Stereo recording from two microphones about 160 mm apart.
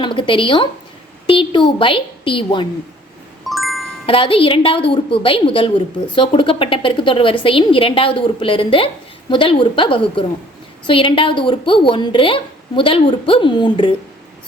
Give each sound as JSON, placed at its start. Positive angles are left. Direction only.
{"t": 0.0, "sound": "a woman's voice", "side_deg": 35}
{"t": 3.4, "sound": "music", "side_deg": 0}
{"t": 4.0, "sound": "a woman's voice", "side_deg": 35}